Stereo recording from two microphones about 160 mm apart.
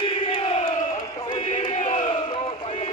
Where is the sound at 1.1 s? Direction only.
30° left (ahead or behind).